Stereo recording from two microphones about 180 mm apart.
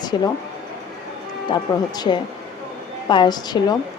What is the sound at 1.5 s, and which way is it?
Speech, 25° left (ahead or behind).